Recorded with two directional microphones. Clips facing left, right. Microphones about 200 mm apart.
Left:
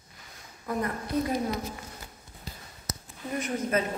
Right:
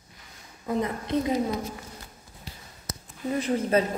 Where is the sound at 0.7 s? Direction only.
20° right (ahead or behind).